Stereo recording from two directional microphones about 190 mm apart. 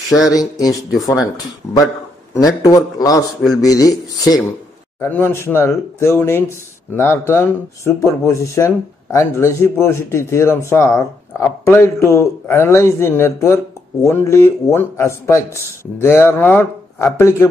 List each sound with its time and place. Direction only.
0.3 s a man's voice: 20° left (ahead or behind)